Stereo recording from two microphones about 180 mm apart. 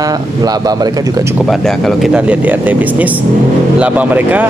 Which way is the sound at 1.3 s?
Centre (ahead or behind).